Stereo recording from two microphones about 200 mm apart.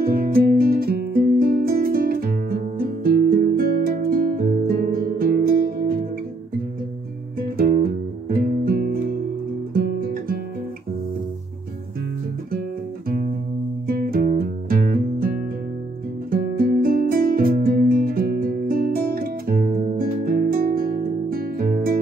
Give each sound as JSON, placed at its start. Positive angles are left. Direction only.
{"t": 0.0, "sound": "music", "side_deg": -50}
{"t": 7.3, "sound": "music", "side_deg": -45}
{"t": 9.8, "sound": "guitar", "side_deg": -45}
{"t": 13.8, "sound": "music", "side_deg": -45}